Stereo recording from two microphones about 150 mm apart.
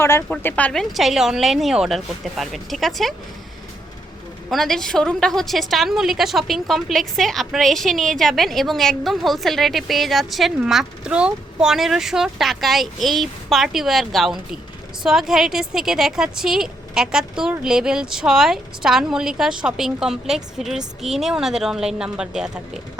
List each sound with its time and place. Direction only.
0.0 s a woman's voice: 15° left (ahead or behind)
4.4 s a woman's voice: centre (ahead or behind)